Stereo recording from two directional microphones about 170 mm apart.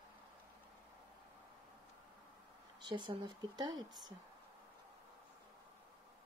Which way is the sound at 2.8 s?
25° right (ahead or behind).